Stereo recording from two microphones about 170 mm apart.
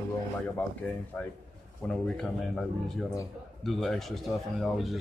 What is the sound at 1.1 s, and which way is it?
Speech, 10° left (ahead or behind).